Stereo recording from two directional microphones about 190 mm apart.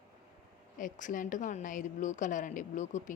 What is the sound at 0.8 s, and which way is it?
A woman's voice, 45° left (ahead or behind).